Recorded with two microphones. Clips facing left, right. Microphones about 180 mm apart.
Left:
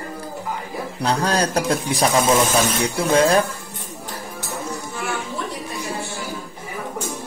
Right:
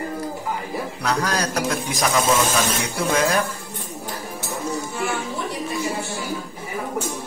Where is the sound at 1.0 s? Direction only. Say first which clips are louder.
Left 4 dB; 30° left (ahead or behind).